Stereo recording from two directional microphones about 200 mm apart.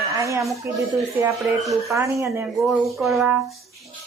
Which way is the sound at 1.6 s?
Centre (ahead or behind).